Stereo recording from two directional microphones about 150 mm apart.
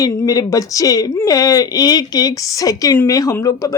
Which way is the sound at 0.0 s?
25° left (ahead or behind).